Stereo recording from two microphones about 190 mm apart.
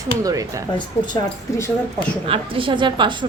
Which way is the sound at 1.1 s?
15° left (ahead or behind).